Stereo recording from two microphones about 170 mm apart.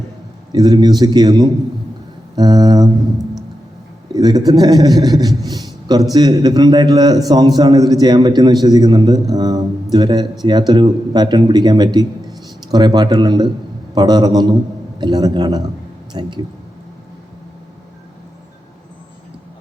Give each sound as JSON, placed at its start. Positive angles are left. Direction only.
{"t": 0.5, "sound": "a man's voice", "side_deg": -20}
{"t": 4.1, "sound": "a man's voice", "side_deg": -25}
{"t": 5.5, "sound": "a sound", "side_deg": -25}
{"t": 6.1, "sound": "a man's voice", "side_deg": -25}